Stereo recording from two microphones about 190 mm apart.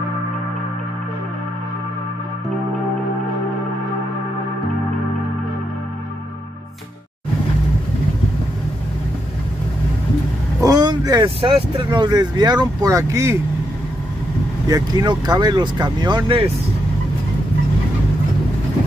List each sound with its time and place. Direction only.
10.6 s speech: 20° right (ahead or behind)
14.7 s speech: 20° right (ahead or behind)